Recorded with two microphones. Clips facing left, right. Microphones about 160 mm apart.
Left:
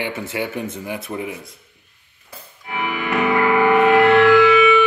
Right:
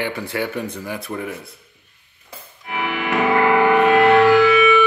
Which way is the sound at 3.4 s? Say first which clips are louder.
Even; 25° right (ahead or behind).